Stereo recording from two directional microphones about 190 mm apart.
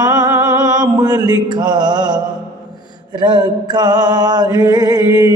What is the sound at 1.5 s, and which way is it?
Mantra, 20° right (ahead or behind).